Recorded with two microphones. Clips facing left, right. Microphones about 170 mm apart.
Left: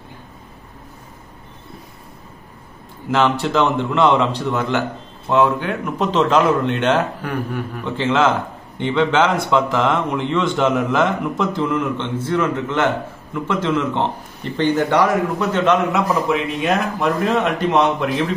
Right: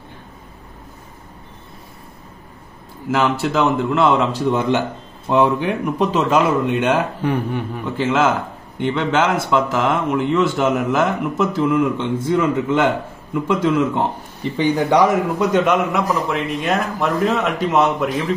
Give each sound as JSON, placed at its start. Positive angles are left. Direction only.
{"t": 3.1, "sound": "speech", "side_deg": -10}
{"t": 4.5, "sound": "speech", "side_deg": -20}
{"t": 7.2, "sound": "speech", "side_deg": -25}
{"t": 8.0, "sound": "speech", "side_deg": -5}
{"t": 15.9, "sound": "speech", "side_deg": 0}